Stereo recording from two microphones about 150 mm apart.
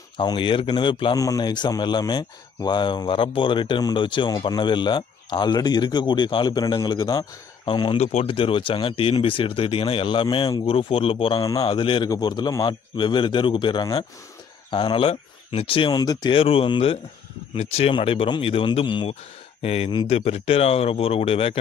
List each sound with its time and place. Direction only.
0.2 s a man's voice: 30° left (ahead or behind)
8.0 s a man's voice: 45° left (ahead or behind)